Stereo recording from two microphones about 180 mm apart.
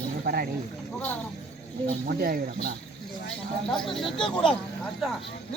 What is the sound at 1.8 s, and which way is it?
Speech, 55° right (ahead or behind).